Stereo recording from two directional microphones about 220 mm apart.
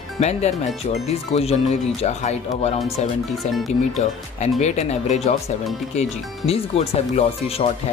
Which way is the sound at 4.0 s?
30° left (ahead or behind).